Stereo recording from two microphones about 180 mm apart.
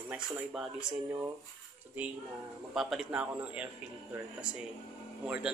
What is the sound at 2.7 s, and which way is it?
A man's voice, centre (ahead or behind).